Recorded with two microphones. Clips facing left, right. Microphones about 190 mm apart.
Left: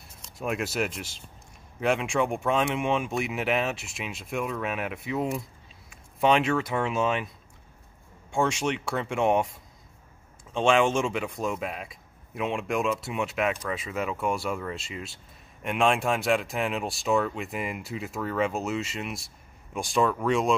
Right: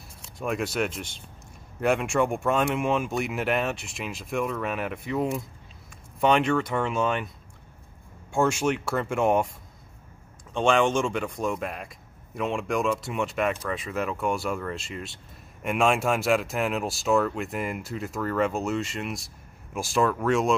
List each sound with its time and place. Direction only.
0.2 s speech: centre (ahead or behind)
8.3 s speech: centre (ahead or behind)
10.5 s speech: 5° left (ahead or behind)